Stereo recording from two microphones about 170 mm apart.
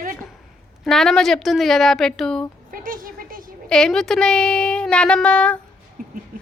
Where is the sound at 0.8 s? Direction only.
5° left (ahead or behind).